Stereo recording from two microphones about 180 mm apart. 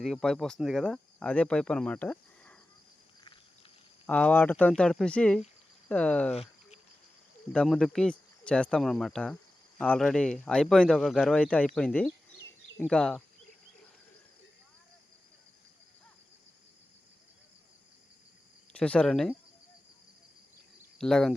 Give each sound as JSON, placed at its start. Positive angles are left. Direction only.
{"t": 0.0, "sound": "speech", "side_deg": 5}
{"t": 4.0, "sound": "speech", "side_deg": 10}
{"t": 6.3, "sound": "cricket", "side_deg": 35}
{"t": 7.5, "sound": "speech", "side_deg": 5}
{"t": 18.7, "sound": "speech", "side_deg": 5}
{"t": 21.0, "sound": "speech", "side_deg": 5}